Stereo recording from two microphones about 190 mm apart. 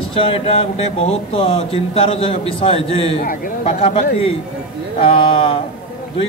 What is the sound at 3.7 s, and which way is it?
Speech, 30° left (ahead or behind).